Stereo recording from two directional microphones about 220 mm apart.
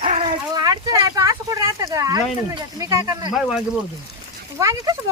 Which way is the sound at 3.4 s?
5° right (ahead or behind).